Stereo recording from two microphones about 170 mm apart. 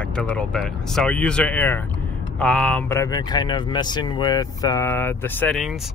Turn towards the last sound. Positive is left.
turn(degrees=10)  # may be behind; listen again after turning